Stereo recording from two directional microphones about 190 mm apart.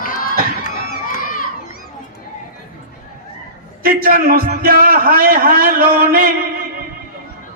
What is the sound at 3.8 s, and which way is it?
A man's voice, 50° right (ahead or behind).